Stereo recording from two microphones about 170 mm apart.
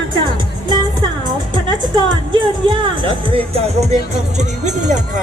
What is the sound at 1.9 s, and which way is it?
Speech, 30° right (ahead or behind).